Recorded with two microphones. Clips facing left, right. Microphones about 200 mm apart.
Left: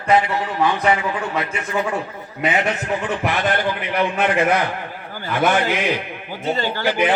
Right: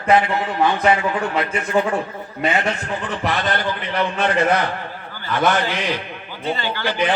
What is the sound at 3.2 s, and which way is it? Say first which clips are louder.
A man's voice: even; 10° left (ahead or behind).